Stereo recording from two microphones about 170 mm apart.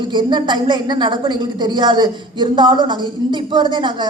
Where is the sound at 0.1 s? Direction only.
25° right (ahead or behind).